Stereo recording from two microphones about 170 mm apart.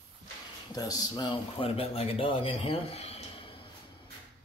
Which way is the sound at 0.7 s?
20° left (ahead or behind).